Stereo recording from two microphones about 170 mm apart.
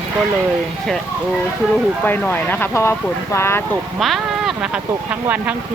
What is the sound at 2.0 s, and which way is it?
Speech, 10° left (ahead or behind).